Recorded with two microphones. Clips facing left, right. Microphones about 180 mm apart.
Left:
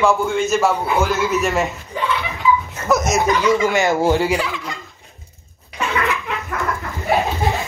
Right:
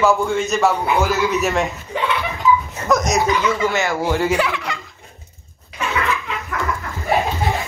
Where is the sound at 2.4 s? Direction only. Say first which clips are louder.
Right 1 dB; 45° right (ahead or behind).